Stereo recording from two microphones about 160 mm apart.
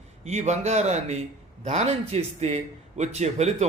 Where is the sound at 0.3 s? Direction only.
45° right (ahead or behind).